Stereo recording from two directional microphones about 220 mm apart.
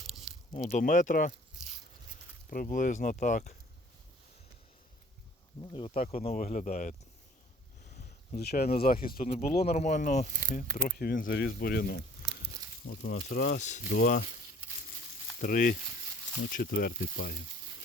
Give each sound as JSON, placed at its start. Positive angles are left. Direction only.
{"t": 0.0, "sound": "squish", "side_deg": 0}
{"t": 0.5, "sound": "speech", "side_deg": 35}
{"t": 2.5, "sound": "speech", "side_deg": 40}
{"t": 5.7, "sound": "speech", "side_deg": 25}
{"t": 7.9, "sound": "a sound", "side_deg": 30}
{"t": 8.4, "sound": "speech", "side_deg": 45}
{"t": 13.0, "sound": "speech", "side_deg": 35}
{"t": 15.4, "sound": "speech", "side_deg": 40}